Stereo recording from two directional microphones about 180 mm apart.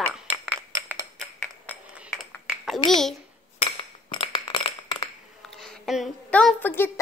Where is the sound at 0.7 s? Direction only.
15° right (ahead or behind).